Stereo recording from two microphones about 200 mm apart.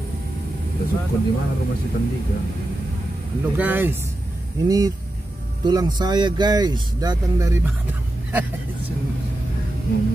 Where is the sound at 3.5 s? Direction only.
10° right (ahead or behind).